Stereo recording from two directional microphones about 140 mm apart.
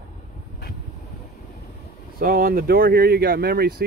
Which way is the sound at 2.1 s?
90° right.